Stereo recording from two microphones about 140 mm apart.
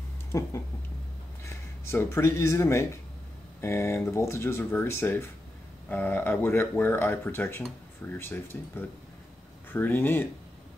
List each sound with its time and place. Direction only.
0.3 s speech: 20° left (ahead or behind)